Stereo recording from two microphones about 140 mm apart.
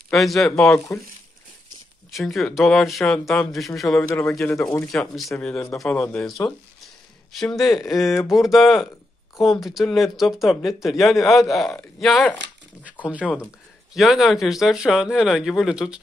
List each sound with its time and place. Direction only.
0.1 s speech: centre (ahead or behind)
0.5 s a man's voice: 20° left (ahead or behind)
2.0 s speech: centre (ahead or behind)
4.1 s speech: 20° left (ahead or behind); by 7.6 s centre (ahead or behind)
7.6 s a man's voice: 25° left (ahead or behind)
7.9 s speech: centre (ahead or behind)
11.1 s a man's voice: 20° left (ahead or behind)
12.0 s speech: centre (ahead or behind)
13.0 s speech: 10° right (ahead or behind)